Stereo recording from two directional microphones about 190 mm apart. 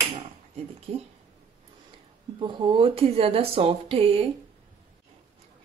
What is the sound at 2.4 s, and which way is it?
Speech, 25° right (ahead or behind).